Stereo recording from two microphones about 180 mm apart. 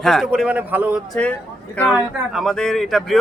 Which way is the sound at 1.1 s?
5° left (ahead or behind).